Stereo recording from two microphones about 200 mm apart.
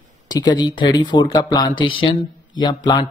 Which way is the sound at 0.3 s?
20° left (ahead or behind).